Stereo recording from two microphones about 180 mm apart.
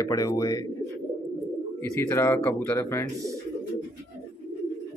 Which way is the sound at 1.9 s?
15° left (ahead or behind).